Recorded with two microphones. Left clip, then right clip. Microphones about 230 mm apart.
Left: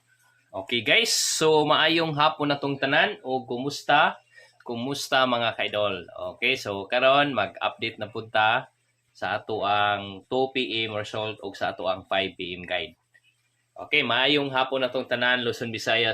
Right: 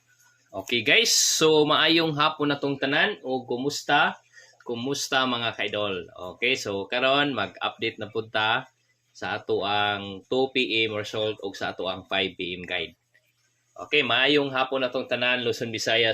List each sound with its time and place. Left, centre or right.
0.7 s speech: centre